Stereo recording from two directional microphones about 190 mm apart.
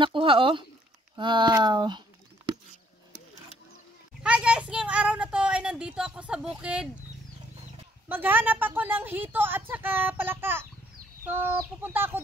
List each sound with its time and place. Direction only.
0.0 s speech: 25° right (ahead or behind)
4.2 s a sound: 5° right (ahead or behind)
8.1 s a woman's voice: 10° right (ahead or behind)